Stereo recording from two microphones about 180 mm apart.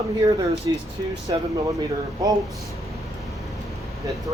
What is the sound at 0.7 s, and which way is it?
Speech, 25° right (ahead or behind).